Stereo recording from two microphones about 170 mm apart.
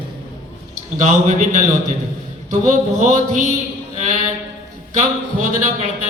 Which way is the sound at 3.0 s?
45° right (ahead or behind).